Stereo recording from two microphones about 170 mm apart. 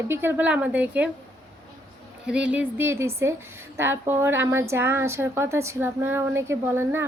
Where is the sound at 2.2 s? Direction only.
5° right (ahead or behind).